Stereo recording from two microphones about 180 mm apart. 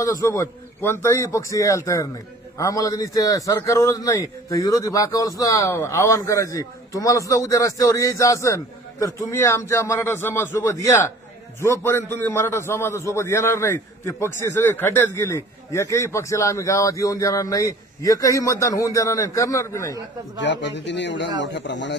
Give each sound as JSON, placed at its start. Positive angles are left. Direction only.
{"t": 0.0, "sound": "a man's voice", "side_deg": 15}
{"t": 20.3, "sound": "a man's voice", "side_deg": 80}